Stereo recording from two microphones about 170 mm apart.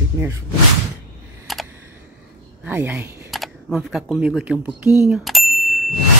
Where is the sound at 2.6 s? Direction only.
10° right (ahead or behind).